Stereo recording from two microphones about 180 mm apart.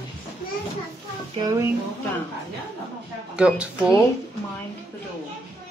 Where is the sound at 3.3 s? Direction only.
5° right (ahead or behind).